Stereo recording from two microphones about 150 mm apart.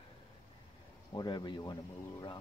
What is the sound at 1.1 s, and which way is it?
Speech, 30° left (ahead or behind).